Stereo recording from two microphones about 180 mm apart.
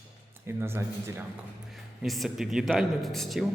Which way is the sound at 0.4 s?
15° right (ahead or behind).